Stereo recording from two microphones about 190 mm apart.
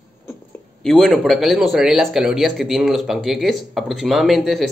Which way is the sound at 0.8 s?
Centre (ahead or behind).